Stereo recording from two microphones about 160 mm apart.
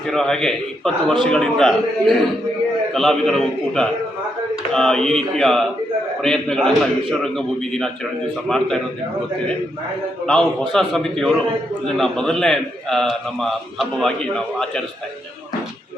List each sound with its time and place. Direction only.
0.1 s a man's voice: 5° left (ahead or behind)
10.6 s a man's voice: centre (ahead or behind)